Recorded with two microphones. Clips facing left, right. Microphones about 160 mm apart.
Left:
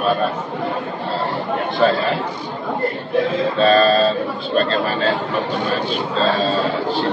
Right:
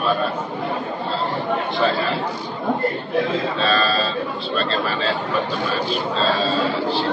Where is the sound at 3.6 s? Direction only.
45° left (ahead or behind).